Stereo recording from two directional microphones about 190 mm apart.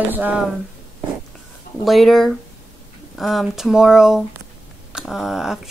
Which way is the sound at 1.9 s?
Centre (ahead or behind).